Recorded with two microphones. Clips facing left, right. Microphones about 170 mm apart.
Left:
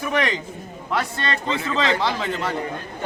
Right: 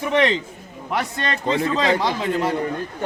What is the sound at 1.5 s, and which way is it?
Speech, 40° right (ahead or behind).